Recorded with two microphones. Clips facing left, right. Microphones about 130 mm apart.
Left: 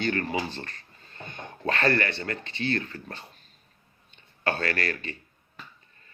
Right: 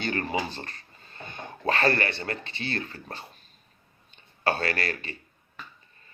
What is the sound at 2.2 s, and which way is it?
Speech, 30° right (ahead or behind).